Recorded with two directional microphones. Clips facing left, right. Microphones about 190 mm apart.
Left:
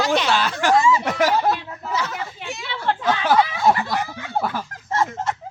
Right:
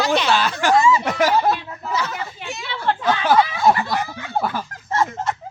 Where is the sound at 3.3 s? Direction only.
20° left (ahead or behind).